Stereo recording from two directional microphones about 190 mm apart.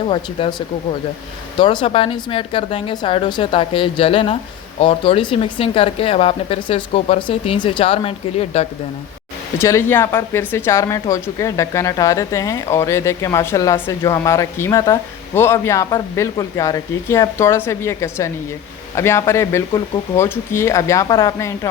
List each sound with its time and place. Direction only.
0.1 s speech: 30° left (ahead or behind)
1.5 s speech: 25° left (ahead or behind)
9.6 s speech: 15° left (ahead or behind)